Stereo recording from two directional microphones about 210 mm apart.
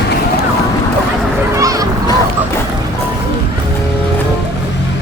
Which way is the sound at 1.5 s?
15° right (ahead or behind).